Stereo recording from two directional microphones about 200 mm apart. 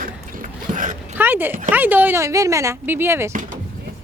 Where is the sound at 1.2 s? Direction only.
10° right (ahead or behind).